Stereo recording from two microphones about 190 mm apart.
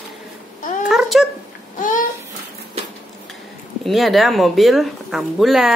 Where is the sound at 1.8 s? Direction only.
45° left (ahead or behind).